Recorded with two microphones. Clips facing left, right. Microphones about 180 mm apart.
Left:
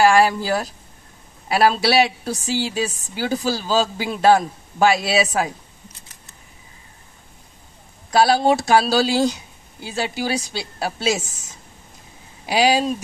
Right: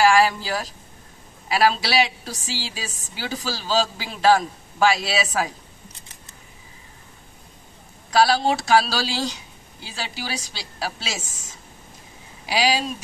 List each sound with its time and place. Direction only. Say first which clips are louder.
0.2 s a woman's voice: left 3 dB; 50° left (ahead or behind)
8.2 s a woman's voice: left 3 dB; 50° left (ahead or behind)
12.4 s a woman's voice: left 5 dB; 45° left (ahead or behind)